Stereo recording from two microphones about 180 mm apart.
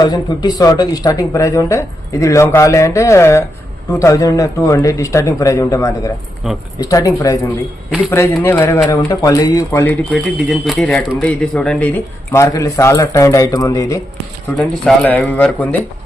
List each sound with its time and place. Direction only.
0.0 s speech: 20° left (ahead or behind)
7.9 s a man's voice: 5° right (ahead or behind)
8.3 s speech: 10° left (ahead or behind)
10.1 s speech: centre (ahead or behind); by 14.0 s 20° left (ahead or behind)
14.5 s speech: 5° left (ahead or behind)